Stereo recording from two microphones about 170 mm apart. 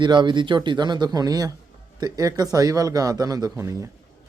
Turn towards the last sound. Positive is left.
turn(degrees=-15)  # may be behind; listen again after turning